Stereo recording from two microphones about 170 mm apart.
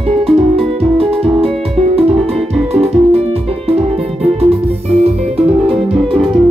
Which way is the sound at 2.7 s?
35° right (ahead or behind).